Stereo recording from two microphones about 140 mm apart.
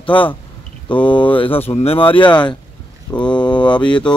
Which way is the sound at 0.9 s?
35° left (ahead or behind).